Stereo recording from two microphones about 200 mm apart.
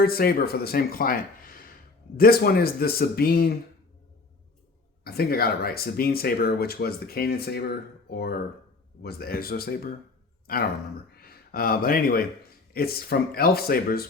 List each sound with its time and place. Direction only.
0.0 s speech: 50° left (ahead or behind)
5.0 s speech: 50° left (ahead or behind)
11.2 s speech: 50° left (ahead or behind)